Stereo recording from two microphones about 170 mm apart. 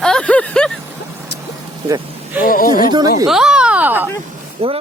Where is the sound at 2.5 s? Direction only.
55° left (ahead or behind).